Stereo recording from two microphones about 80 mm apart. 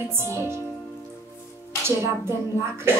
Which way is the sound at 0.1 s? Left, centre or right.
Right.